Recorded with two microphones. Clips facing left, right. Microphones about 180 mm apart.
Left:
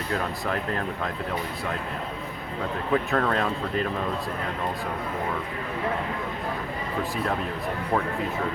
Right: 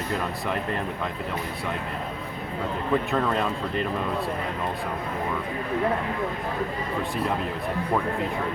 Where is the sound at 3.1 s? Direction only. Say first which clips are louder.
Even; 5° right (ahead or behind).